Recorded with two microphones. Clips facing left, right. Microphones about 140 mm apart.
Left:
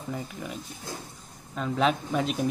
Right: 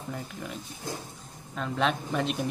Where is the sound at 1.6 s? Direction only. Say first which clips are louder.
Left 3 dB; centre (ahead or behind).